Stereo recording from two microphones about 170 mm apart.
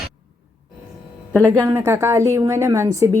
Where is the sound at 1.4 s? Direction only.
15° right (ahead or behind).